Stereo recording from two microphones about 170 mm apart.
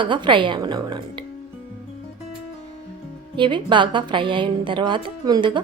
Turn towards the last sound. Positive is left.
turn(degrees=-25)  # may be behind; listen again after turning